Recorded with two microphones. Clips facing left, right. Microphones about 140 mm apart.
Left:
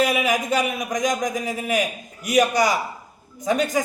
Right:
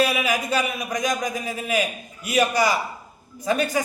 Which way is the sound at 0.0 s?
15° left (ahead or behind).